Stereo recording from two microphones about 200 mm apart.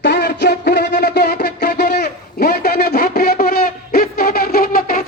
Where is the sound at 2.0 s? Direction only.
50° left (ahead or behind).